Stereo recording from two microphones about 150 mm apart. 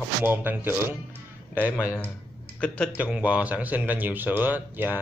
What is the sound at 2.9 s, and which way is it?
Speech, 10° right (ahead or behind).